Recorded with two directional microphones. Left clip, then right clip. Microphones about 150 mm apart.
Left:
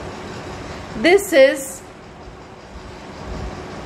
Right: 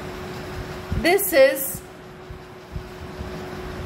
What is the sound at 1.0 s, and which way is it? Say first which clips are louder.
Speech: left 4 dB; 25° left (ahead or behind).